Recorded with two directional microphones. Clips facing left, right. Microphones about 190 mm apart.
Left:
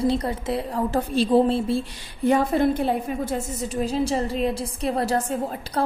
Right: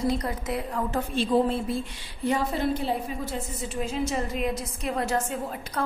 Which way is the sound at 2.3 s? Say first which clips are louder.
Left 6 dB; 55° left (ahead or behind).